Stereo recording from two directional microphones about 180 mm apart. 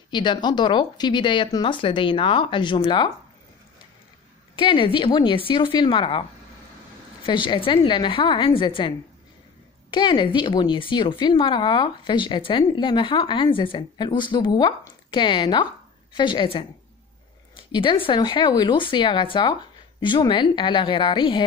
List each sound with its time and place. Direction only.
0.1 s speech: 25° left (ahead or behind)
4.6 s speech: 30° left (ahead or behind)
7.2 s speech: 25° left (ahead or behind)